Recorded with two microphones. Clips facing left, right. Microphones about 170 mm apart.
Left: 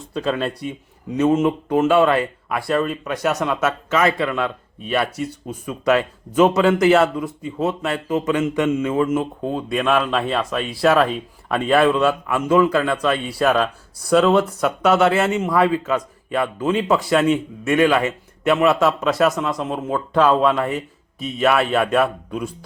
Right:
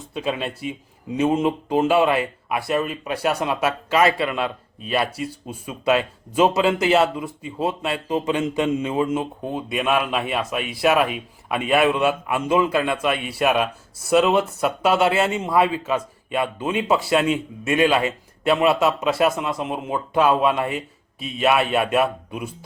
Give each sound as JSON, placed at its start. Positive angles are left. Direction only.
{"t": 0.1, "sound": "speech", "side_deg": -20}
{"t": 1.4, "sound": "a man's voice", "side_deg": -30}
{"t": 5.6, "sound": "a man's voice", "side_deg": -25}
{"t": 14.2, "sound": "a man's voice", "side_deg": -25}
{"t": 19.6, "sound": "a man's voice", "side_deg": -10}